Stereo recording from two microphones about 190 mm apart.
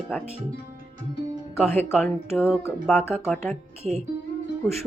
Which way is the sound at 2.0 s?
10° left (ahead or behind).